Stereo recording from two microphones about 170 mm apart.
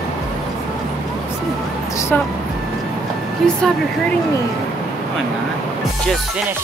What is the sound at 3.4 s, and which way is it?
Speech, centre (ahead or behind).